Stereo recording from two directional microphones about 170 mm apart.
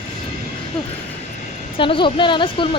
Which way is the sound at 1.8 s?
30° left (ahead or behind).